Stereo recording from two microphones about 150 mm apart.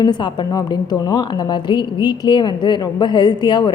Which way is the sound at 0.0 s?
30° left (ahead or behind).